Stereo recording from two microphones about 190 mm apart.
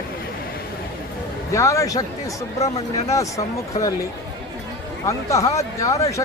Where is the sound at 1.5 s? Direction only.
15° left (ahead or behind).